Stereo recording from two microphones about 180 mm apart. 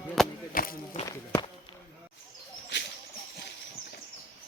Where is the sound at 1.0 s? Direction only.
15° left (ahead or behind).